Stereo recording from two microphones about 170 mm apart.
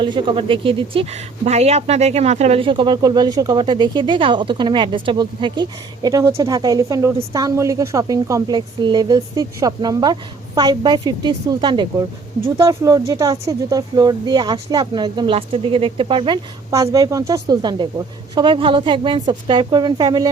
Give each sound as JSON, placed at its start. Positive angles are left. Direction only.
{"t": 0.0, "sound": "speech", "side_deg": -30}